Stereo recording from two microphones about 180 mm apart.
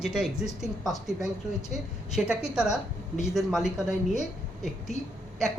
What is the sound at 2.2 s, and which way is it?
Speech, 5° right (ahead or behind).